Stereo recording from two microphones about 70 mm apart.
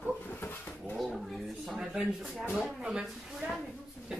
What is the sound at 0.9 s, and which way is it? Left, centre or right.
A woman's voice, centre.